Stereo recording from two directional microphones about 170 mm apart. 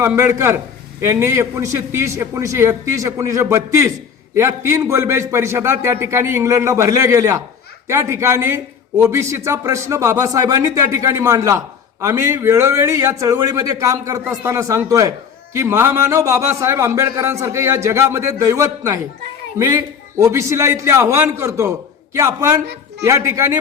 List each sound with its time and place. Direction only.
0.0 s a man's voice: 15° right (ahead or behind)
22.6 s speech: 80° right
23.0 s a man's voice: 20° right (ahead or behind)